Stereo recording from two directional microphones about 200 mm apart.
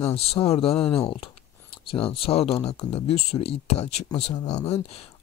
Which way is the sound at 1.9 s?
30° left (ahead or behind).